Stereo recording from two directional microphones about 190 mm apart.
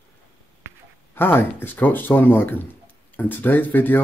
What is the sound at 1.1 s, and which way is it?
Speech, 10° left (ahead or behind).